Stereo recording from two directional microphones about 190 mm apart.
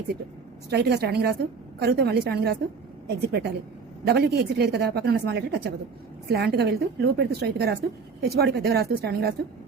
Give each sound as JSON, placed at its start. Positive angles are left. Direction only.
{"t": 0.7, "sound": "a woman's voice", "side_deg": -60}